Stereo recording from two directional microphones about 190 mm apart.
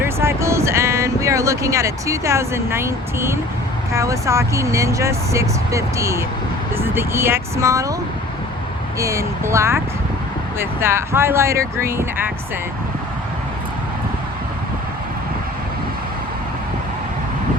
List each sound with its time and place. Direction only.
0.0 s music: 15° right (ahead or behind)
3.9 s speech: 15° right (ahead or behind)
9.0 s speech: 15° right (ahead or behind)